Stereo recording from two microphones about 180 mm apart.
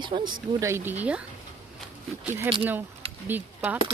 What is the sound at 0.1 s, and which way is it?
Speech, 30° right (ahead or behind).